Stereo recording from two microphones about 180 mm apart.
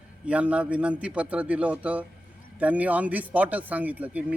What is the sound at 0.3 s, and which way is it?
Speech, 5° right (ahead or behind).